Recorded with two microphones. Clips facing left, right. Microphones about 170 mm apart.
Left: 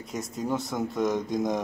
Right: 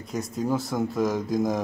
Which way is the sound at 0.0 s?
Centre (ahead or behind).